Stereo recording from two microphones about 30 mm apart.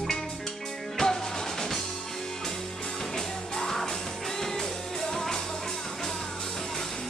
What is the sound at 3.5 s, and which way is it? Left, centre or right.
Music, centre.